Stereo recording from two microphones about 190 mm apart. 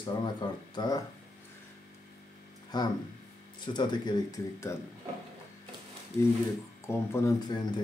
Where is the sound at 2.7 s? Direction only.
20° left (ahead or behind).